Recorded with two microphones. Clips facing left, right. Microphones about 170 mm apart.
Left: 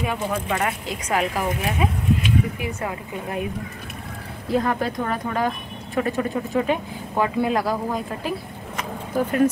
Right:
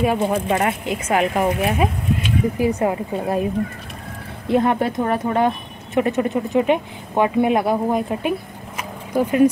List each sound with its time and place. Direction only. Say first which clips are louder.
0.0 s speech: right 7 dB; 35° right (ahead or behind)
4.5 s speech: right 4 dB; 25° right (ahead or behind)
8.7 s a sound: right 3 dB; 10° right (ahead or behind)